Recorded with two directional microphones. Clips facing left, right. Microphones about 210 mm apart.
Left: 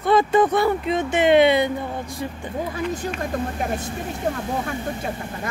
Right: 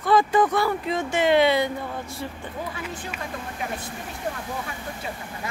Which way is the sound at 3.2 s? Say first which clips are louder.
Left 7 dB; 45° left (ahead or behind).